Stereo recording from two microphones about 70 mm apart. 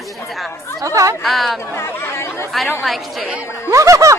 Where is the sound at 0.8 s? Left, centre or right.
Right.